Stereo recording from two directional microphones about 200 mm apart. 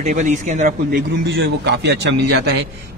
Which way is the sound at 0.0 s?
35° right (ahead or behind).